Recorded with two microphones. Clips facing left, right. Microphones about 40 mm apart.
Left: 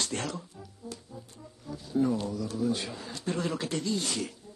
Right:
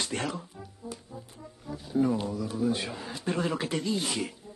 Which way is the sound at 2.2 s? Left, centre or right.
Centre.